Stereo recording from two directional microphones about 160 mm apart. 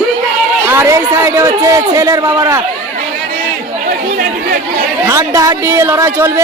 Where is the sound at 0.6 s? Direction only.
15° right (ahead or behind).